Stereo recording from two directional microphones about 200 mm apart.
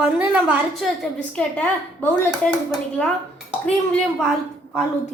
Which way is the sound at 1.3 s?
5° left (ahead or behind).